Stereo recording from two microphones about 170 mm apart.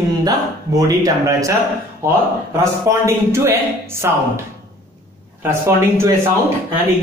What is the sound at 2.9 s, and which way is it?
Speech, 15° right (ahead or behind).